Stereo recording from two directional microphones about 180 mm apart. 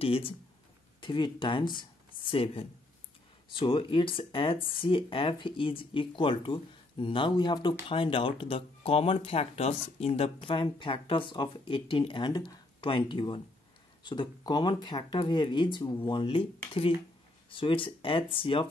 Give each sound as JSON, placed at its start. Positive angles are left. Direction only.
{"t": 0.0, "sound": "speech", "side_deg": 30}